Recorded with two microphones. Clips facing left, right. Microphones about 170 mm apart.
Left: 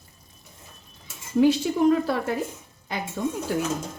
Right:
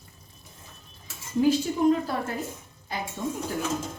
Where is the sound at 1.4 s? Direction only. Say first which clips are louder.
Left 3 dB; 70° left (ahead or behind).